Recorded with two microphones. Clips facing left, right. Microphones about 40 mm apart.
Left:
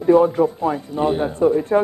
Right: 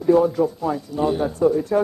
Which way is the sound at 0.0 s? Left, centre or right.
Left.